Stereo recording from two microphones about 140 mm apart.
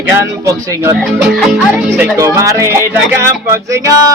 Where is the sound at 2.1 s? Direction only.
20° right (ahead or behind).